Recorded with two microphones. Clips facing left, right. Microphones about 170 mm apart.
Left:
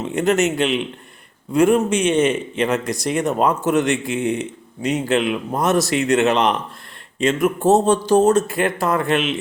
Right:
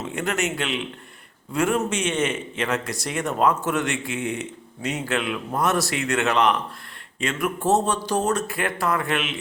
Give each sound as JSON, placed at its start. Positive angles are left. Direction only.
{"t": 0.2, "sound": "speech", "side_deg": 20}